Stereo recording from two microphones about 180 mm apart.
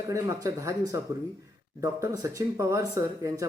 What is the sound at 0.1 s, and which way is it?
A man's voice, 20° right (ahead or behind).